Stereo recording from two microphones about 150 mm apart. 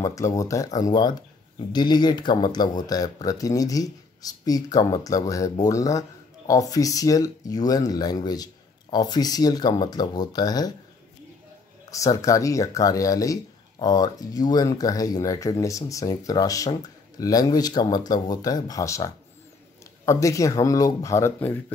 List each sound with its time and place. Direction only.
0.0 s speech: 20° left (ahead or behind)
11.9 s speech: 20° left (ahead or behind)